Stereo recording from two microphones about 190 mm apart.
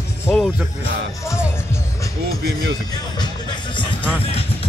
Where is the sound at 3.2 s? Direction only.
25° left (ahead or behind).